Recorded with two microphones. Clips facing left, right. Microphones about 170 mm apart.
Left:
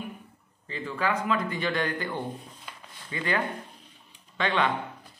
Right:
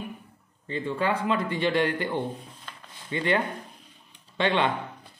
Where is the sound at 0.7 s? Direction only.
30° right (ahead or behind).